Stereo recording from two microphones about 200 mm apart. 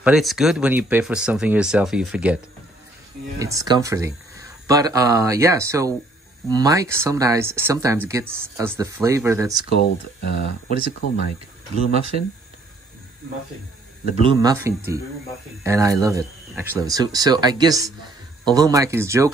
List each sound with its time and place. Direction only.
0.0 s speech: centre (ahead or behind)
3.3 s speech: 15° right (ahead or behind)
9.7 s speech: 55° left (ahead or behind)
14.2 s speech: 20° right (ahead or behind)